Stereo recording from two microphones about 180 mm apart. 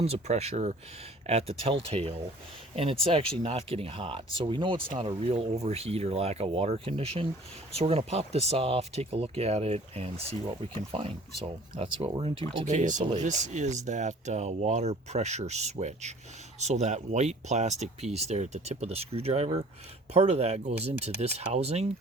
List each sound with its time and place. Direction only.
0.0 s speech: 35° right (ahead or behind)
11.8 s speech: 30° right (ahead or behind)
12.7 s speech: 45° right (ahead or behind)